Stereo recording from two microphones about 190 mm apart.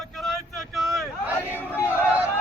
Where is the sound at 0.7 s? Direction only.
Centre (ahead or behind).